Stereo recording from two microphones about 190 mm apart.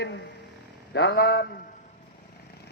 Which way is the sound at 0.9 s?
65° left (ahead or behind).